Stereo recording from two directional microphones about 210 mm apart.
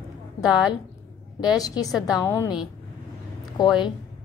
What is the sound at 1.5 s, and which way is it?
A woman's voice, 15° left (ahead or behind).